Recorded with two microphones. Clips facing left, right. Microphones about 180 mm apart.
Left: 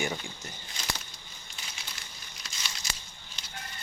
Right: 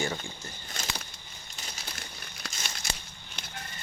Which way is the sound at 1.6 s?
40° right (ahead or behind).